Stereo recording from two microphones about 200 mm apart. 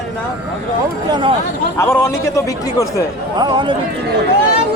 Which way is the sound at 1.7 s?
10° left (ahead or behind).